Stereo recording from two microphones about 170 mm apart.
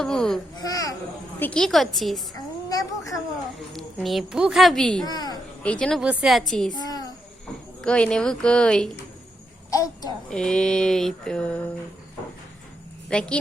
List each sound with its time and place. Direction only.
0.0 s speech: 5° left (ahead or behind)
0.6 s children playing: 20° left (ahead or behind)
1.4 s speech: 5° left (ahead or behind)
3.7 s speech: centre (ahead or behind)
5.0 s a woman's voice: 25° left (ahead or behind)
5.6 s speech: 5° left (ahead or behind)
6.0 s speech: 5° right (ahead or behind)
6.7 s a sound: 20° left (ahead or behind)
7.8 s speech: 5° left (ahead or behind)
9.6 s a child's voice: 20° left (ahead or behind)
10.2 s speech: 5° left (ahead or behind)
13.1 s speech: 5° left (ahead or behind)